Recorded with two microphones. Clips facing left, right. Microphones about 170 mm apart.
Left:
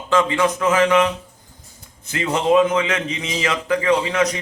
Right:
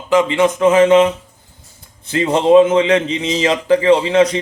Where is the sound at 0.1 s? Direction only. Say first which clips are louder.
Right 5 dB; 20° right (ahead or behind).